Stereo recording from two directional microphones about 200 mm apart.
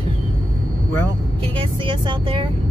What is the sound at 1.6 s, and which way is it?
Speech, 25° right (ahead or behind).